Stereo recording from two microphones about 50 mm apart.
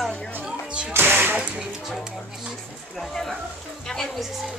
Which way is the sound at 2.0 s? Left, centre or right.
Centre.